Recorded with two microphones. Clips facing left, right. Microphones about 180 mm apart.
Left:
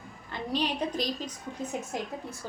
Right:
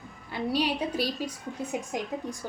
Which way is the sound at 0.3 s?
10° right (ahead or behind).